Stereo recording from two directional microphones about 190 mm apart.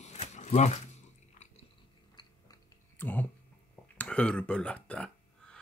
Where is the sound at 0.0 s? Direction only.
35° left (ahead or behind).